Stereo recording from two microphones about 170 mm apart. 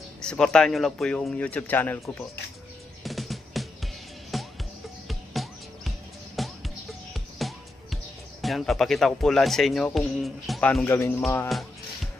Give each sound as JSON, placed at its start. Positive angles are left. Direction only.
{"t": 0.2, "sound": "speech", "side_deg": 5}
{"t": 3.0, "sound": "music", "side_deg": 0}
{"t": 9.9, "sound": "speech", "side_deg": 0}